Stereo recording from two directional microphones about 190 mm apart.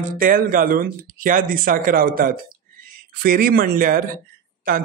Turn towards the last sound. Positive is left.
turn(degrees=-50)  # may be behind; listen again after turning